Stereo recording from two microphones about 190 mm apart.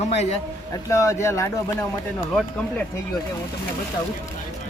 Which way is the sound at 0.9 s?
15° left (ahead or behind).